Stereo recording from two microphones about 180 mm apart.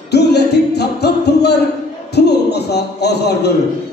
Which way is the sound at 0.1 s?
70° left (ahead or behind).